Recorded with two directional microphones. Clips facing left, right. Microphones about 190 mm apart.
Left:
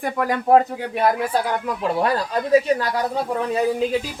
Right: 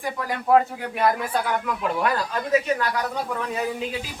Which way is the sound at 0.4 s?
40° left (ahead or behind).